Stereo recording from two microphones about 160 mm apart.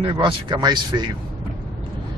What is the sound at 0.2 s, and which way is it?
Speech, 30° right (ahead or behind).